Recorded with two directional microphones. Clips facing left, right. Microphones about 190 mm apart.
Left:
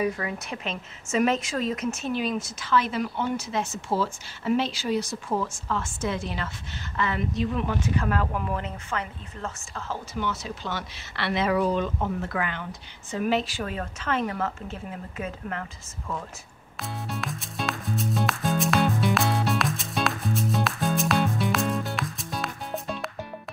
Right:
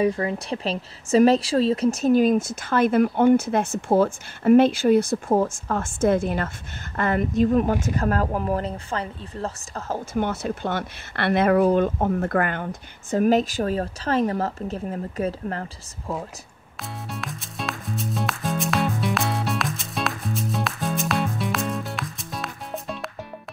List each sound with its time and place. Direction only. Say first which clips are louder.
0.0 s a woman's voice: right 5 dB; 30° right (ahead or behind)
17.1 s music: left 1 dB; centre (ahead or behind)